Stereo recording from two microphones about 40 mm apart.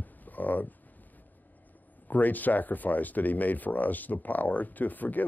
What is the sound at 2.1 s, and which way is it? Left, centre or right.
Speech, left.